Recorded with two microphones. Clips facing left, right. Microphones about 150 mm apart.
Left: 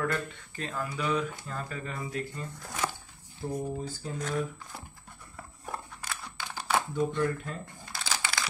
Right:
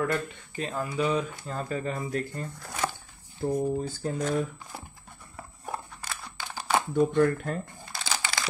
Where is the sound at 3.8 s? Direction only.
60° right (ahead or behind).